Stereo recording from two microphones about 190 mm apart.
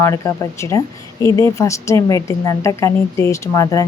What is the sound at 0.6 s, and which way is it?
Speech, 15° left (ahead or behind).